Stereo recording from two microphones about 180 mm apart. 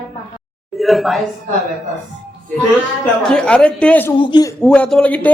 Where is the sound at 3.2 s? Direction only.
5° left (ahead or behind).